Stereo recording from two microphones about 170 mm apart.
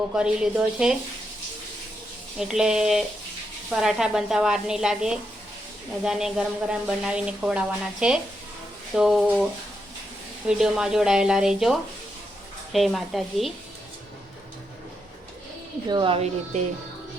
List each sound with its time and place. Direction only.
0.1 s a woman's voice: 5° right (ahead or behind)
2.4 s a woman's voice: 5° right (ahead or behind)
15.9 s a woman's voice: 30° right (ahead or behind)